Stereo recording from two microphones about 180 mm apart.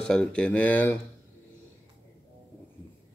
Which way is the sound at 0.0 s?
5° left (ahead or behind).